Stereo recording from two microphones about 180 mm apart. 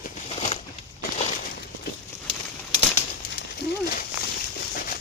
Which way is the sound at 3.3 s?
65° left (ahead or behind).